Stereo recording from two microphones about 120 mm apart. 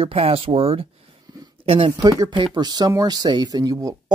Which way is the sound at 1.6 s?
50° right (ahead or behind).